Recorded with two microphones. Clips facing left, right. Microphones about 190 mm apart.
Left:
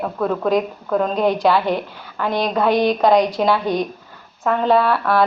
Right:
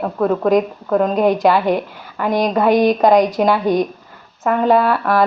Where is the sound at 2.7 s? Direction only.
45° right (ahead or behind).